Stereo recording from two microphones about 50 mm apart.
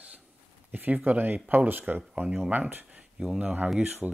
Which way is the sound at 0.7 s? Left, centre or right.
Right.